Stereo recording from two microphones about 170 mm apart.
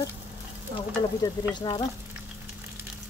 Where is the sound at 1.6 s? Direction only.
25° left (ahead or behind).